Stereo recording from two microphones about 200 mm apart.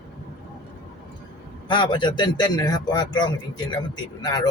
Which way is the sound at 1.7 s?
25° left (ahead or behind).